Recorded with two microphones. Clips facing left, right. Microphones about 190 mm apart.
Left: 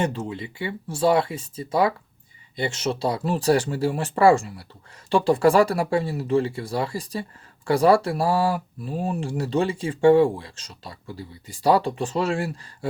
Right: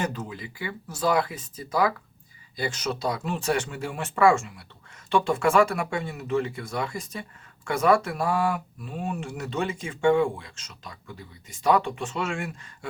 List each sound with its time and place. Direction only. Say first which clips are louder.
0.0 s speech: left 5 dB; 30° left (ahead or behind)